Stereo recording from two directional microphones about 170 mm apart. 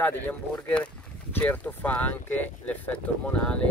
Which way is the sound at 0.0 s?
10° left (ahead or behind).